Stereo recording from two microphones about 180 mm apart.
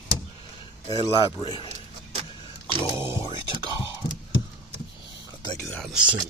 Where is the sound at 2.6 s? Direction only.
25° left (ahead or behind).